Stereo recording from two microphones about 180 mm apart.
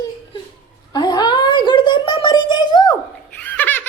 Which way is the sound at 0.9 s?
25° left (ahead or behind).